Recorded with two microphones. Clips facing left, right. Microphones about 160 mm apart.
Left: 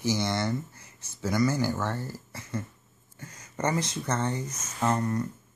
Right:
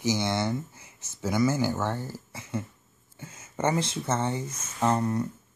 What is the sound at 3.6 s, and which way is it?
Speech, 25° right (ahead or behind).